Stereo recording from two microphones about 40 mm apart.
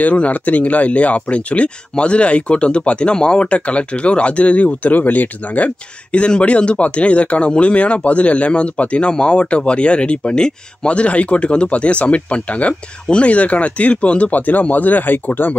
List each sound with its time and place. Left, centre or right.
0.0 s speech: left
6.1 s speech: left